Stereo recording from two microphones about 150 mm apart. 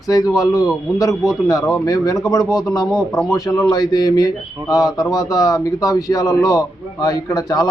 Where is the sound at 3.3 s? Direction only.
25° left (ahead or behind).